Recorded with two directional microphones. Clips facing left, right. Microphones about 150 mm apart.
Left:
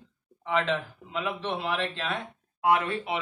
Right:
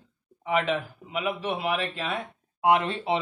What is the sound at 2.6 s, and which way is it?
Speech, 20° right (ahead or behind).